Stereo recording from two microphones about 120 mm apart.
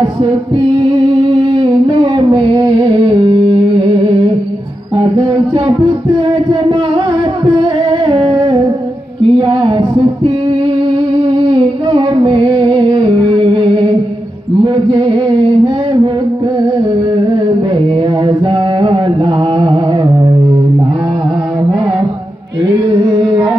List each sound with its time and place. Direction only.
0.8 s humming: 45° right (ahead or behind)
5.5 s speech: 40° right (ahead or behind)
7.5 s humming: 40° right (ahead or behind)
9.2 s a sound: 45° right (ahead or behind)
10.9 s music: 45° right (ahead or behind)
14.6 s mantra: 45° right (ahead or behind)
17.8 s mantra: 45° right (ahead or behind)